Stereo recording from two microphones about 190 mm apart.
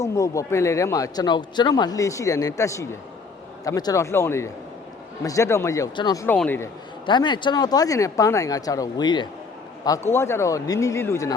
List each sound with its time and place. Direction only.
0.0 s speech: 15° left (ahead or behind)
6.2 s speech: 10° left (ahead or behind)
7.0 s speech: 25° left (ahead or behind)